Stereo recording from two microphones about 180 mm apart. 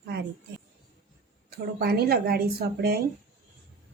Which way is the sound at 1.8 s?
60° right (ahead or behind).